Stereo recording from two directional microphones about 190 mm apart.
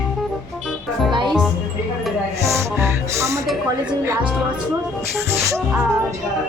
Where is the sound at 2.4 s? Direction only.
15° right (ahead or behind).